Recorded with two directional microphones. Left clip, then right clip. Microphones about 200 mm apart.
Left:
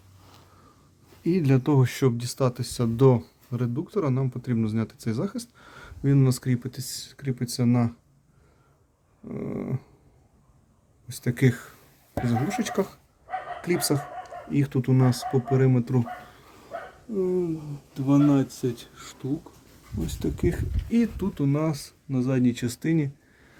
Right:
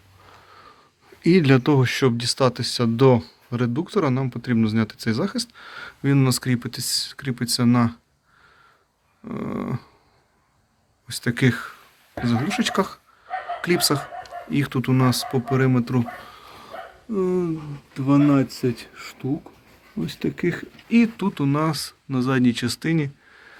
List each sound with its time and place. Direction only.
1.2 s speech: 5° right (ahead or behind)
9.2 s speech: 5° left (ahead or behind)
11.1 s speech: 10° left (ahead or behind)
17.2 s speech: 5° right (ahead or behind)
17.9 s speech: 45° right (ahead or behind)
18.3 s speech: 15° right (ahead or behind)
20.1 s speech: 5° right (ahead or behind)